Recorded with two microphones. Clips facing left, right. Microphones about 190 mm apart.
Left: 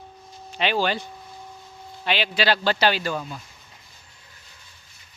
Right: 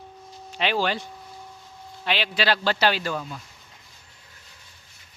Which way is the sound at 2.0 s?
Centre (ahead or behind).